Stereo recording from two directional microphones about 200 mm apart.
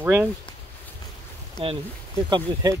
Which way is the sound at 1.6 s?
30° right (ahead or behind).